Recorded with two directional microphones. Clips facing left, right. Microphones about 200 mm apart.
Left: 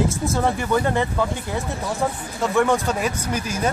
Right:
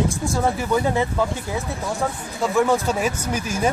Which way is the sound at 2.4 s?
5° right (ahead or behind).